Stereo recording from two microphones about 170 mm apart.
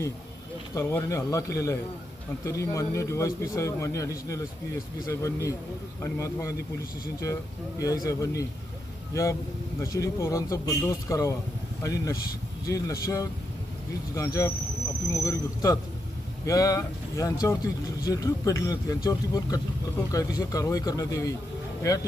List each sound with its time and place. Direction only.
0.7 s a man's voice: 15° left (ahead or behind)
9.8 s a man's voice: 20° left (ahead or behind)